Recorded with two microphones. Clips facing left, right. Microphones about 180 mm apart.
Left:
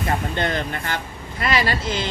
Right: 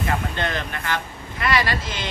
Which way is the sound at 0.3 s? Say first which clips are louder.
Left 3 dB; 30° left (ahead or behind).